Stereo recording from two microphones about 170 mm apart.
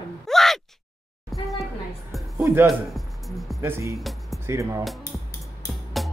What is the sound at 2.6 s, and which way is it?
Speech, centre (ahead or behind).